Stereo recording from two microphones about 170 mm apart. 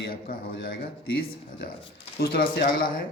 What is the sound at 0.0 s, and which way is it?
Speech, 60° left (ahead or behind).